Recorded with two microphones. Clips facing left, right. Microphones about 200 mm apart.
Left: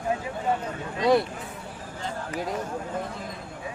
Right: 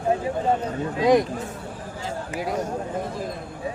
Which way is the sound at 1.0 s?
15° right (ahead or behind).